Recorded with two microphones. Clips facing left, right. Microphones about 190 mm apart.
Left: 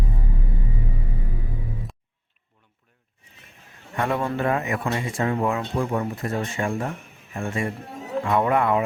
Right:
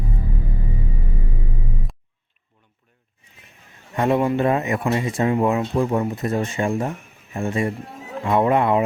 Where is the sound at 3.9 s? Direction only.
20° right (ahead or behind).